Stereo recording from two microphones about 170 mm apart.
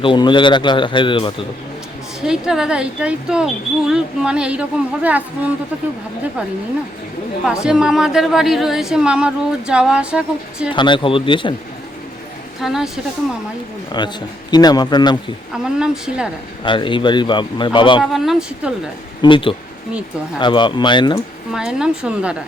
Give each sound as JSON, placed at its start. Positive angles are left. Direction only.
{"t": 0.0, "sound": "speech", "side_deg": 30}
{"t": 2.2, "sound": "a woman's voice", "side_deg": -5}
{"t": 5.7, "sound": "speech", "side_deg": -10}
{"t": 7.4, "sound": "a woman's voice", "side_deg": -5}
{"t": 10.7, "sound": "speech", "side_deg": 30}
{"t": 12.6, "sound": "a woman's voice", "side_deg": 0}
{"t": 14.0, "sound": "speech", "side_deg": 25}
{"t": 15.5, "sound": "a woman's voice", "side_deg": -5}
{"t": 16.6, "sound": "speech", "side_deg": 30}
{"t": 18.0, "sound": "a woman's voice", "side_deg": 0}
{"t": 19.2, "sound": "speech", "side_deg": 30}
{"t": 21.5, "sound": "a woman's voice", "side_deg": -5}